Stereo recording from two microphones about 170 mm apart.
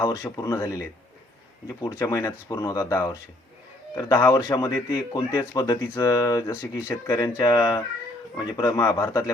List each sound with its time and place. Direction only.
0.0 s a man's voice: 20° left (ahead or behind)